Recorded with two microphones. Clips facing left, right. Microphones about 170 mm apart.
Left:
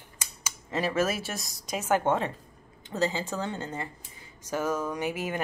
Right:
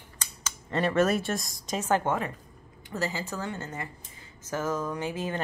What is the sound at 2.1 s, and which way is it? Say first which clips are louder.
A woman's voice: left 2 dB; 25° left (ahead or behind).